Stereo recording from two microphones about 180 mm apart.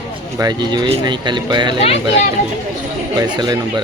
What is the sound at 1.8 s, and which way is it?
Speech, 35° left (ahead or behind).